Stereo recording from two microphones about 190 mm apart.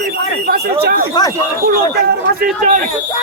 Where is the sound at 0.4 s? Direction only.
55° right (ahead or behind).